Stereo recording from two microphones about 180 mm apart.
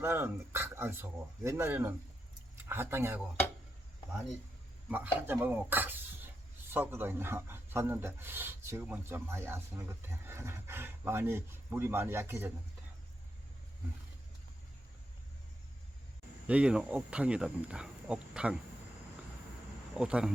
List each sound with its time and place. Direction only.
0.0 s speech: 15° right (ahead or behind)
4.9 s speech: 10° right (ahead or behind)
16.5 s speech: 5° right (ahead or behind)
20.0 s speech: 5° right (ahead or behind)